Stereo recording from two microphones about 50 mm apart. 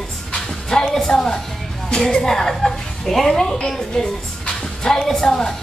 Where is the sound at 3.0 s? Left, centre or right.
Centre.